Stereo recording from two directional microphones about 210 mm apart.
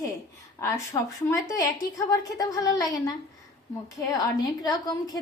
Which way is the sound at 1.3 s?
15° left (ahead or behind).